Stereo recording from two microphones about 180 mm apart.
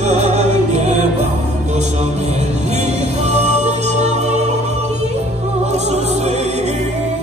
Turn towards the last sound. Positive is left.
turn(degrees=-35)  # may be behind; listen again after turning